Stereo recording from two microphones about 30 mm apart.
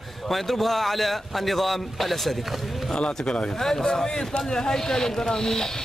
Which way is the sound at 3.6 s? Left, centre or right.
Centre.